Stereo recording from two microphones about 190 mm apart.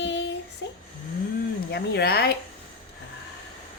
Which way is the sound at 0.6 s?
65° left (ahead or behind).